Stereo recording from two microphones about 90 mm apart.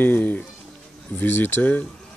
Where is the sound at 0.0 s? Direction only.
20° left (ahead or behind).